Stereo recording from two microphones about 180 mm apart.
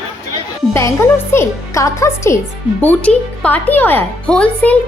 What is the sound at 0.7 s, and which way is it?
Speech, 15° left (ahead or behind).